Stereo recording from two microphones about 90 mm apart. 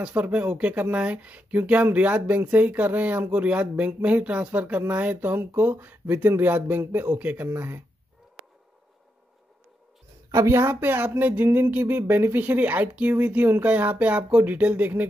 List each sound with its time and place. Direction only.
0.0 s speech: 10° right (ahead or behind)
10.3 s speech: 35° right (ahead or behind)